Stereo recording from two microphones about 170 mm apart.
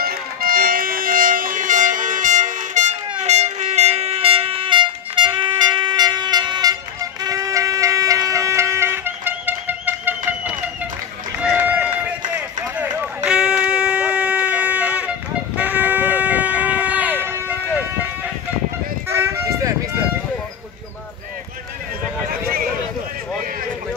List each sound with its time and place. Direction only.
0.0 s music: 60° right (ahead or behind); by 3.0 s 45° right (ahead or behind)
3.2 s vehicle horn: 40° right (ahead or behind); by 10.9 s 10° right (ahead or behind)
11.3 s run: 10° right (ahead or behind)
19.0 s a sound: 15° right (ahead or behind)